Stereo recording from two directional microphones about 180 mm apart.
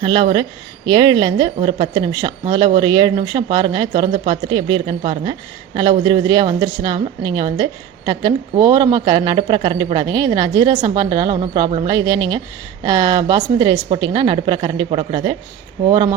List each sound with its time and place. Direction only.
0.0 s a woman's voice: 30° right (ahead or behind)